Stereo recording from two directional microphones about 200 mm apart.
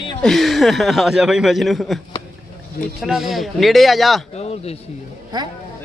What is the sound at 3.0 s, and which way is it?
A man's voice, centre (ahead or behind).